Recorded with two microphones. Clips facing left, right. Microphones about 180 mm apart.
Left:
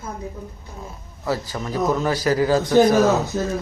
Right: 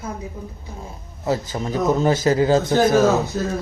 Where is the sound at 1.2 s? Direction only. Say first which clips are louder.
Right 2 dB; 20° right (ahead or behind).